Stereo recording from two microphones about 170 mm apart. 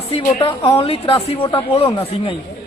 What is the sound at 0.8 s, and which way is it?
Speech, 35° left (ahead or behind).